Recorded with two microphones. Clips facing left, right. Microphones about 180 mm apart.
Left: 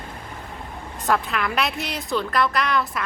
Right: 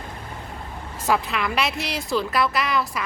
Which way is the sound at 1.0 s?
Centre (ahead or behind).